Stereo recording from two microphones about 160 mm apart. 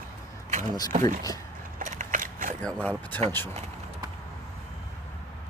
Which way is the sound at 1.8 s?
50° right (ahead or behind).